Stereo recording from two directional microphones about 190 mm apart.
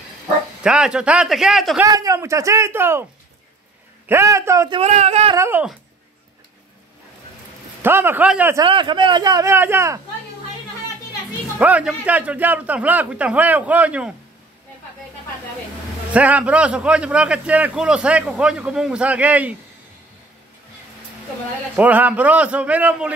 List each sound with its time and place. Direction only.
0.7 s a man's voice: 5° right (ahead or behind)
1.9 s a man's voice: 20° right (ahead or behind)
4.1 s a man's voice: 15° right (ahead or behind)
4.7 s speech: 35° right (ahead or behind)
5.3 s a man's voice: 10° right (ahead or behind)
7.8 s a man's voice: 10° right (ahead or behind)
8.6 s a man's voice: 25° right (ahead or behind)
11.5 s a man's voice: 10° right (ahead or behind)
16.1 s a man's voice: 5° right (ahead or behind)
21.7 s a man's voice: 10° right (ahead or behind)